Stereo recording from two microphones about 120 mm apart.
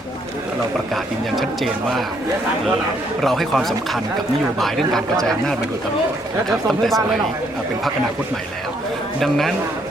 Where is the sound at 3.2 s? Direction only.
Centre (ahead or behind).